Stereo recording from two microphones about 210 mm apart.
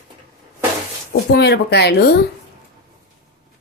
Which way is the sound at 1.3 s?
50° left (ahead or behind).